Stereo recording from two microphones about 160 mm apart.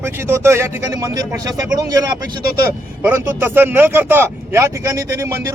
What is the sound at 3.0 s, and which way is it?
Speech, 10° right (ahead or behind).